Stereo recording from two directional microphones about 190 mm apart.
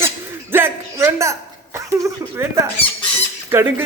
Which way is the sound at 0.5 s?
15° right (ahead or behind).